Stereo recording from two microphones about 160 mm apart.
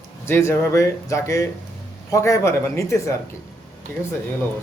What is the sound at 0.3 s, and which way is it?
Speech, 15° left (ahead or behind).